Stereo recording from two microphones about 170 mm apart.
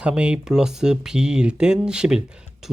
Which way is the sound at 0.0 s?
5° right (ahead or behind).